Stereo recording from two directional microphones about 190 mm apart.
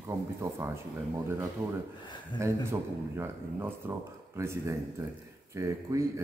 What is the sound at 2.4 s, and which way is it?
Speech, 15° right (ahead or behind).